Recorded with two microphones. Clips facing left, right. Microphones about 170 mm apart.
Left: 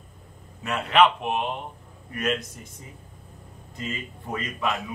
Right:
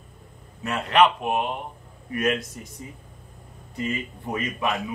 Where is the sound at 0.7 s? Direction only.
Centre (ahead or behind).